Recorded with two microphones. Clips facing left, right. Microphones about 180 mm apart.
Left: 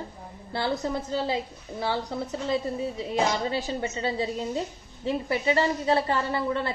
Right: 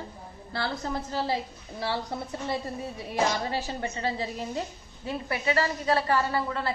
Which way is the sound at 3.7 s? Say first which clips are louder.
Left 2 dB; 20° left (ahead or behind).